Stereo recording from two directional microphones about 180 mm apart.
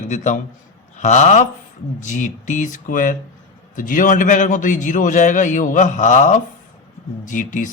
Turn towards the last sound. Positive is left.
turn(degrees=45)  # may be behind; listen again after turning